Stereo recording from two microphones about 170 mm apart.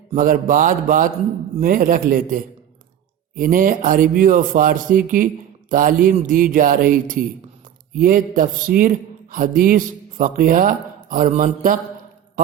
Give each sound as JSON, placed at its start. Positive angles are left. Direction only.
{"t": 0.1, "sound": "a man's voice", "side_deg": -55}